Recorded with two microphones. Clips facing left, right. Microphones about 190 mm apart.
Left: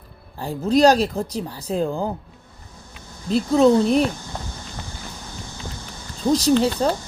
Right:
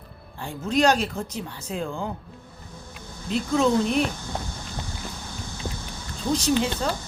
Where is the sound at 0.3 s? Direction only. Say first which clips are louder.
Left 6 dB; 35° left (ahead or behind).